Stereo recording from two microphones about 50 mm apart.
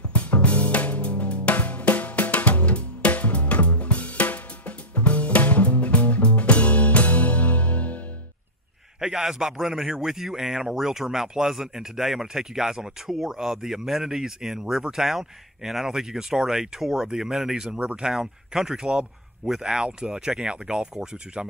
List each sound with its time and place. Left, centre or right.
0.1 s music: left
9.0 s a man's voice: centre
17.6 s a man's voice: right